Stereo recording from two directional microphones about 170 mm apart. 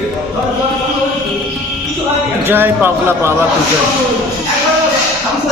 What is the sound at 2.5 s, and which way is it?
Speech, 10° right (ahead or behind).